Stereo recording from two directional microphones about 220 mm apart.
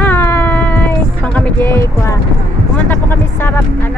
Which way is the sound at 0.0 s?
10° left (ahead or behind).